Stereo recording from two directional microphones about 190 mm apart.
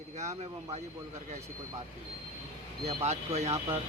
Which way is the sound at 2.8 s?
35° right (ahead or behind).